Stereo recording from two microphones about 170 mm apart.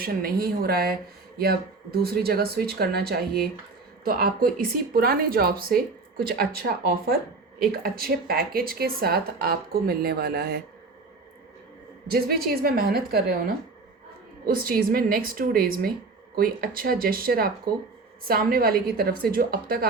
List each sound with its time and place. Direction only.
0.0 s speech: 60° right (ahead or behind)
12.1 s speech: 65° right (ahead or behind)
14.4 s speech: 60° right (ahead or behind)